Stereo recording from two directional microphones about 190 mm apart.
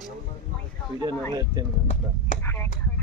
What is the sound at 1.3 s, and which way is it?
Speech, 20° right (ahead or behind).